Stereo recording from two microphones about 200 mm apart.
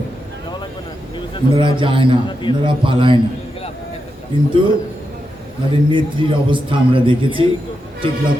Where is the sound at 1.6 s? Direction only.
25° right (ahead or behind).